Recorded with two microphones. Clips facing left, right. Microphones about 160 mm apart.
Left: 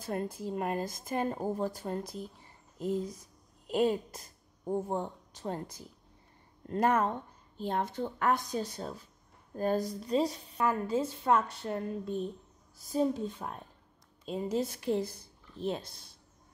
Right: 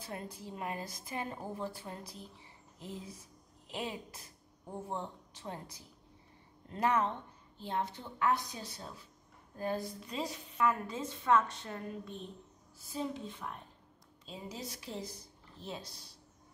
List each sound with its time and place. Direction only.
0.0 s a woman's voice: 50° left (ahead or behind); by 12.1 s 30° left (ahead or behind)
12.9 s a woman's voice: 45° left (ahead or behind)
14.2 s a woman's voice: 55° left (ahead or behind)